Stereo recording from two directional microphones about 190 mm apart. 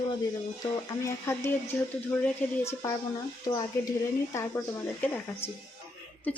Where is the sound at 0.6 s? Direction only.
15° left (ahead or behind).